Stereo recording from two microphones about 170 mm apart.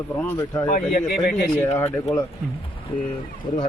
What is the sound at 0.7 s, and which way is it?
Speech, 55° left (ahead or behind).